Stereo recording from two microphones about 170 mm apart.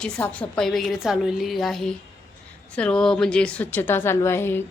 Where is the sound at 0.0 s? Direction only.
5° left (ahead or behind).